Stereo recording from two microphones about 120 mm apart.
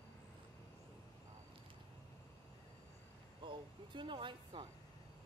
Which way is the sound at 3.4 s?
40° right (ahead or behind).